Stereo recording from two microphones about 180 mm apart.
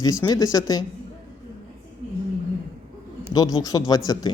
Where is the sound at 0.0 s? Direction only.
20° left (ahead or behind).